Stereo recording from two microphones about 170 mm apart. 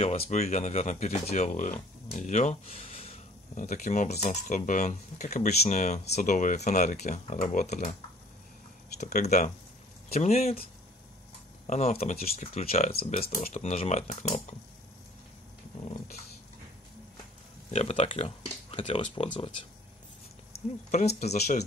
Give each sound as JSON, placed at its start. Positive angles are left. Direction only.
{"t": 0.3, "sound": "speech", "side_deg": 40}
{"t": 9.0, "sound": "speech", "side_deg": 45}
{"t": 12.9, "sound": "speech", "side_deg": 55}
{"t": 13.5, "sound": "speech", "side_deg": 40}
{"t": 15.8, "sound": "dog", "side_deg": 40}
{"t": 17.6, "sound": "speech", "side_deg": 40}
{"t": 19.0, "sound": "speech", "side_deg": 45}
{"t": 21.2, "sound": "speech", "side_deg": 40}